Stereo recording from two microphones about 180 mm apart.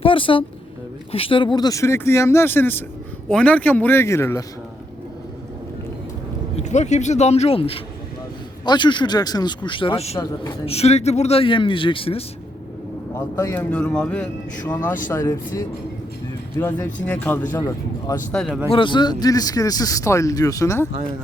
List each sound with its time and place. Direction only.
0.0 s speech: 30° left (ahead or behind)
6.6 s speech: 40° left (ahead or behind)
13.1 s speech: 10° left (ahead or behind)
18.7 s speech: 25° left (ahead or behind)